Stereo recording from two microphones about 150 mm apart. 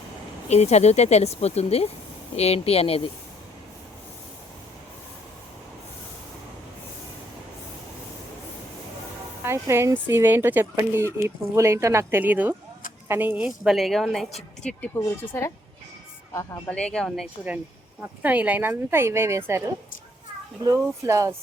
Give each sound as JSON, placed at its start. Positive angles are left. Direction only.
{"t": 0.4, "sound": "speech", "side_deg": 45}
{"t": 9.4, "sound": "a woman's voice", "side_deg": -15}
{"t": 16.6, "sound": "a woman's voice", "side_deg": 5}
{"t": 18.2, "sound": "speech", "side_deg": -10}
{"t": 20.7, "sound": "speech", "side_deg": -20}